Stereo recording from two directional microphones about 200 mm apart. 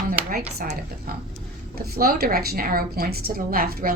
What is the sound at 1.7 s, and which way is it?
A woman's voice, 50° right (ahead or behind).